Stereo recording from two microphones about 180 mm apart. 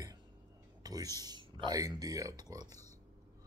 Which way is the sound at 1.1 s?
25° right (ahead or behind).